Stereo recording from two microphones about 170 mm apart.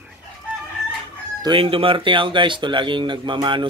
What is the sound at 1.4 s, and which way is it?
Speech, 30° right (ahead or behind).